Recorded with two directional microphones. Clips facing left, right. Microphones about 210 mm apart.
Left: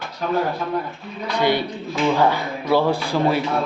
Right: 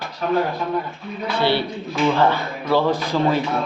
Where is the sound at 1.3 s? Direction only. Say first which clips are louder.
Left 1 dB; 15° left (ahead or behind).